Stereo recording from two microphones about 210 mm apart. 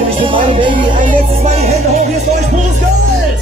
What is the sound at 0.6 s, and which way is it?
Music, 25° right (ahead or behind).